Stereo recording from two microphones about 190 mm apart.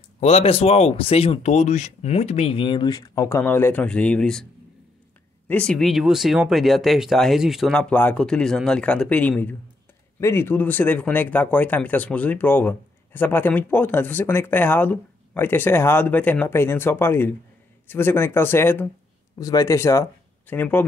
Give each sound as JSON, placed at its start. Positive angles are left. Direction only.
{"t": 0.2, "sound": "speech", "side_deg": 35}
{"t": 5.5, "sound": "speech", "side_deg": 5}